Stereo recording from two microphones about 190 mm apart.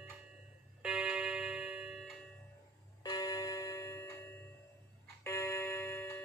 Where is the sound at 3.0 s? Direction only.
20° left (ahead or behind).